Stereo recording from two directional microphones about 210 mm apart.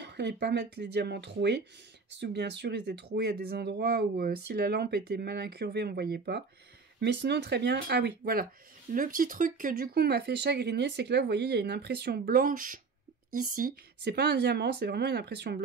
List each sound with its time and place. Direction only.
0.0 s speech: 50° right (ahead or behind)